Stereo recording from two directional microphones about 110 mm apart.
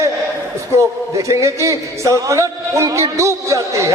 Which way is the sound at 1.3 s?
25° right (ahead or behind).